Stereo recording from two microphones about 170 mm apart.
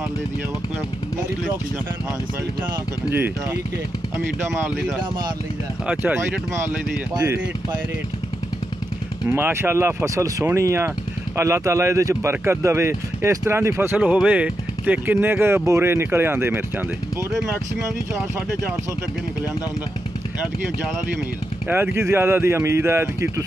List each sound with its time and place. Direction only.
5.9 s speech: 10° right (ahead or behind)
9.3 s speech: 15° right (ahead or behind)
21.6 s speech: 10° right (ahead or behind)